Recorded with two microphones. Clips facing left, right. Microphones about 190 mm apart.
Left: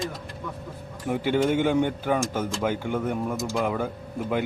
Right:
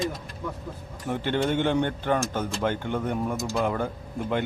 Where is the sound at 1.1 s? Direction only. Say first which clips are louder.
Left 3 dB; 10° left (ahead or behind).